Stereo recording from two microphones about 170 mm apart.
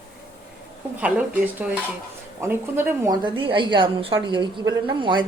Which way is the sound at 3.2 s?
30° right (ahead or behind).